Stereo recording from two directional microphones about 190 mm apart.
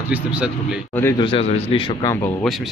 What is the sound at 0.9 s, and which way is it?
Speech, 15° left (ahead or behind).